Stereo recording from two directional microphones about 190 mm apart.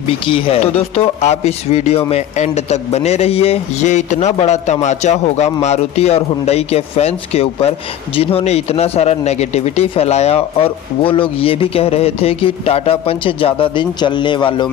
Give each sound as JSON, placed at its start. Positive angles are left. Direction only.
{"t": 0.3, "sound": "speech", "side_deg": 30}